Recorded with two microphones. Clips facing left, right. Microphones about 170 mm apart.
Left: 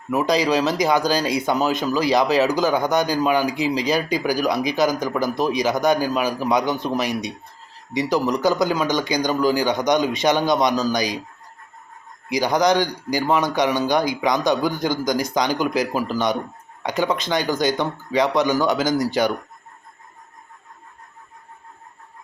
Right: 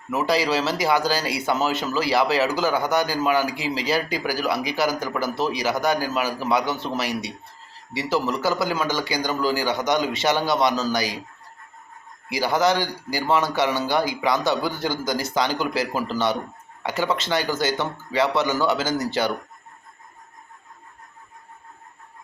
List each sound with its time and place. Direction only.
0.1 s speech: 15° left (ahead or behind)
12.3 s speech: 15° left (ahead or behind)